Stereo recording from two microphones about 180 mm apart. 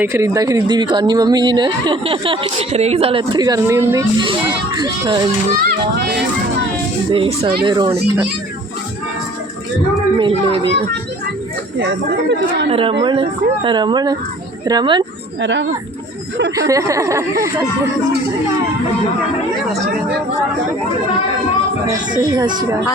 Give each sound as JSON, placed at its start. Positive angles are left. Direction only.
{"t": 0.0, "sound": "speech", "side_deg": -15}
{"t": 7.1, "sound": "speech", "side_deg": -30}
{"t": 10.2, "sound": "speech", "side_deg": -25}
{"t": 11.8, "sound": "speech", "side_deg": -70}
{"t": 12.7, "sound": "a woman's voice", "side_deg": -30}
{"t": 15.4, "sound": "speech", "side_deg": -80}
{"t": 16.6, "sound": "speech", "side_deg": -20}
{"t": 22.2, "sound": "speech", "side_deg": -20}